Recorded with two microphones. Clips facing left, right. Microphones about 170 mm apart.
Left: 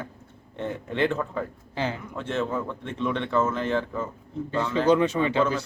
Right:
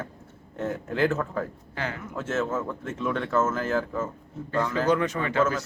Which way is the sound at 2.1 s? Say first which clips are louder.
Even; 5° right (ahead or behind).